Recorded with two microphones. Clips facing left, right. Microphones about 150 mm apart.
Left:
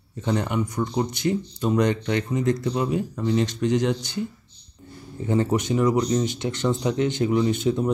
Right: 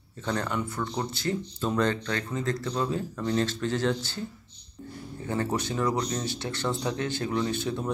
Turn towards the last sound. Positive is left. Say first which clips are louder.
# left 7 dB
turn(degrees=20)  # may be behind; listen again after turning